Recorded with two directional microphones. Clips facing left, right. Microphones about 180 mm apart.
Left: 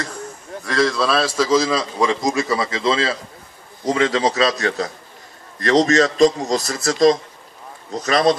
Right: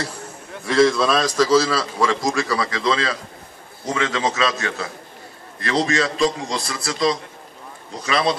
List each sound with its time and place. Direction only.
0.7 s a man's voice: centre (ahead or behind); by 8.4 s 45° left (ahead or behind)